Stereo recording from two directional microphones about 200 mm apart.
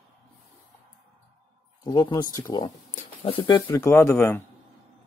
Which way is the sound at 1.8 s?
20° left (ahead or behind).